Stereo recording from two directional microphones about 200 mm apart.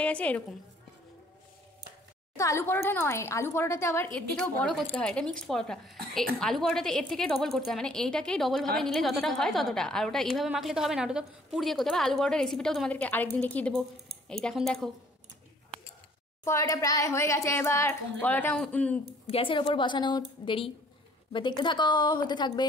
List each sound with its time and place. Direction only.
0.0 s speech: 5° left (ahead or behind)
2.3 s a woman's voice: 15° left (ahead or behind)
16.4 s speech: 15° left (ahead or behind)
19.2 s a woman's voice: 25° left (ahead or behind)